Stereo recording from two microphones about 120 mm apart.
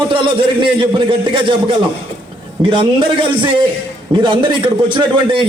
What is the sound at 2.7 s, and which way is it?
A man's voice, 40° right (ahead or behind).